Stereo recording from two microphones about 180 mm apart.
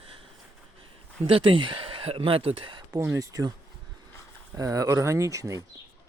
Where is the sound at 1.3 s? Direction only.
30° right (ahead or behind).